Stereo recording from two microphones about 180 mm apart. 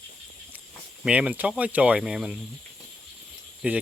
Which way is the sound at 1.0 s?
5° right (ahead or behind).